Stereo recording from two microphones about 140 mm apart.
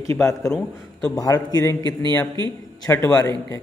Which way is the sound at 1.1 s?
25° left (ahead or behind).